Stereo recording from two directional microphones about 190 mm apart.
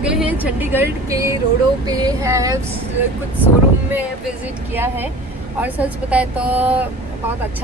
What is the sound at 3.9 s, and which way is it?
Speech, 10° right (ahead or behind).